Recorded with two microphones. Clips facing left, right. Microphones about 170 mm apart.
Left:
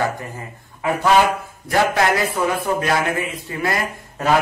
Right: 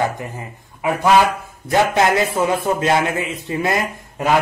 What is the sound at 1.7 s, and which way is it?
A man's voice, 25° right (ahead or behind).